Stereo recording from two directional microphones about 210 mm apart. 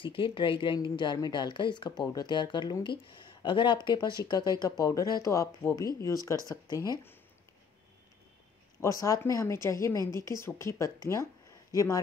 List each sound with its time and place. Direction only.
0.0 s a woman's voice: 25° left (ahead or behind)
9.0 s a woman's voice: 15° left (ahead or behind)